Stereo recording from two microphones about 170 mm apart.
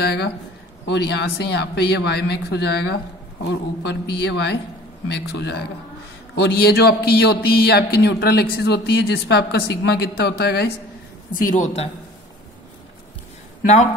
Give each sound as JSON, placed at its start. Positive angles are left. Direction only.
{"t": 0.0, "sound": "a man's voice", "side_deg": 70}
{"t": 3.4, "sound": "a woman's voice", "side_deg": 90}
{"t": 5.0, "sound": "a man's voice", "side_deg": 85}
{"t": 11.3, "sound": "speech", "side_deg": 50}